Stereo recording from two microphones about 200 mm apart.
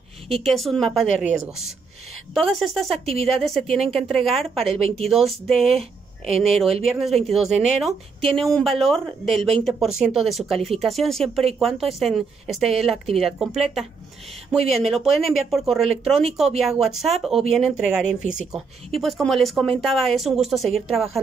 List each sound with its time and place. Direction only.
0.4 s speech: centre (ahead or behind)
2.3 s speech: centre (ahead or behind)
4.6 s speech: 30° right (ahead or behind)
5.0 s speech: centre (ahead or behind)